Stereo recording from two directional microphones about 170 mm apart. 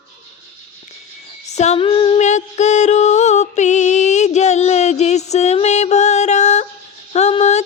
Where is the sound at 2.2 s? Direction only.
45° left (ahead or behind).